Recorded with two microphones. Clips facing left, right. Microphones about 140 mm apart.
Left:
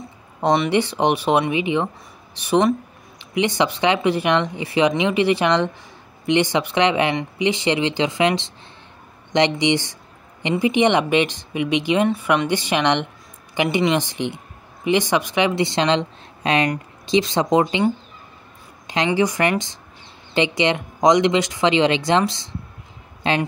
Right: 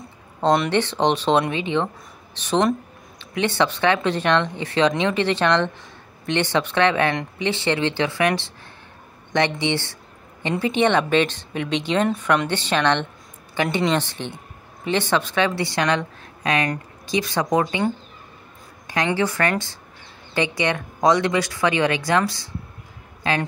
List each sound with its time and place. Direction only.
0.7 s speech: 10° left (ahead or behind)
19.0 s speech: 15° left (ahead or behind)